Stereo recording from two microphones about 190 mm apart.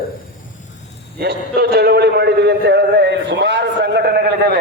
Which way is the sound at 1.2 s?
60° right (ahead or behind).